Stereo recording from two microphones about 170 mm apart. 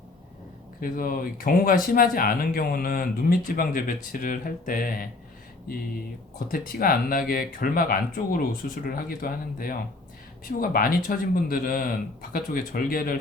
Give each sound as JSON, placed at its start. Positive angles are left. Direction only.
{"t": 0.8, "sound": "speech", "side_deg": 55}
{"t": 6.5, "sound": "speech", "side_deg": 60}